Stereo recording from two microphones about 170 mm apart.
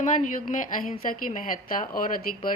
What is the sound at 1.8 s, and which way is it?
Speech, 55° left (ahead or behind).